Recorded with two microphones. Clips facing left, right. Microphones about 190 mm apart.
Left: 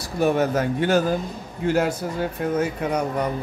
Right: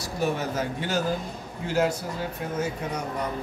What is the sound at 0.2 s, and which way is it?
Speech, 60° left (ahead or behind).